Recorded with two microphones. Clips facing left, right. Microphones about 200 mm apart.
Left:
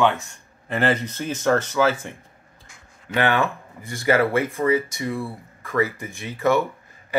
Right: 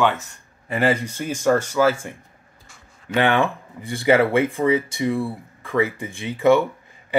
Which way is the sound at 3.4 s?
30° right (ahead or behind).